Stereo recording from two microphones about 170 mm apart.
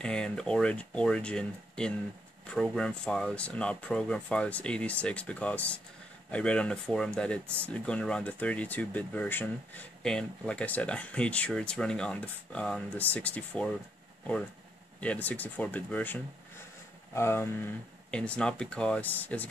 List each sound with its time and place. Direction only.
0.0 s speech: 5° left (ahead or behind)
15.0 s speech: 10° left (ahead or behind)